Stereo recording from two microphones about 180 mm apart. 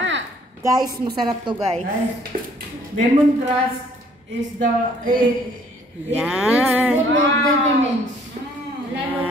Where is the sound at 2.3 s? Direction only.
45° right (ahead or behind).